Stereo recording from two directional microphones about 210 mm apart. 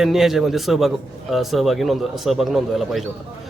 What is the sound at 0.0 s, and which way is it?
A man's voice, centre (ahead or behind).